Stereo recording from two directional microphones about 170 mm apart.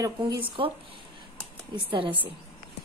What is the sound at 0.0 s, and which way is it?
Speech, 25° right (ahead or behind).